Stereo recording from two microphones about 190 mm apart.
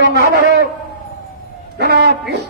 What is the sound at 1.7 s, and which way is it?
Speech, 60° right (ahead or behind).